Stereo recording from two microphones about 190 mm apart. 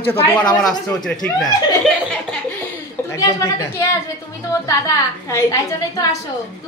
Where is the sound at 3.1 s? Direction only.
15° left (ahead or behind).